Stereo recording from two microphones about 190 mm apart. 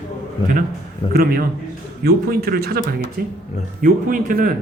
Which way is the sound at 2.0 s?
55° right (ahead or behind).